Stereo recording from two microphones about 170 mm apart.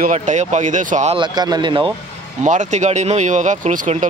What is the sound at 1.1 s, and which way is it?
Speech, 25° right (ahead or behind).